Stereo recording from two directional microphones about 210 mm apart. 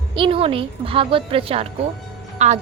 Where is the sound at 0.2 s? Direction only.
25° right (ahead or behind).